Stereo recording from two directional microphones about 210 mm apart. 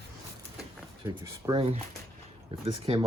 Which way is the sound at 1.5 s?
25° right (ahead or behind).